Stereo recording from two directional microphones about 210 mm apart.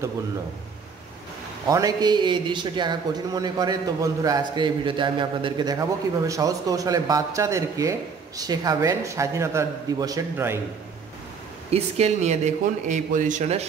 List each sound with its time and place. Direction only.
1.7 s a man's voice: 15° right (ahead or behind)
11.7 s speech: 30° right (ahead or behind)